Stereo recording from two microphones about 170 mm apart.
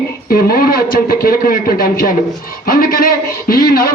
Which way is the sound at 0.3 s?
60° left (ahead or behind).